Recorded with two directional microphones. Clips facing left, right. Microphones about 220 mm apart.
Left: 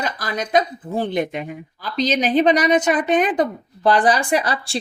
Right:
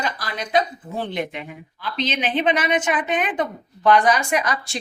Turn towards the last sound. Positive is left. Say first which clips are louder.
# left 3 dB
turn(degrees=30)  # may be behind; listen again after turning